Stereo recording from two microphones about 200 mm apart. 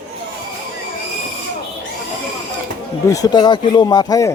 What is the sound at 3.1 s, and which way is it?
Speech, 20° left (ahead or behind).